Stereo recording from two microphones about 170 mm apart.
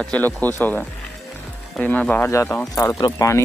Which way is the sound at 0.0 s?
10° left (ahead or behind).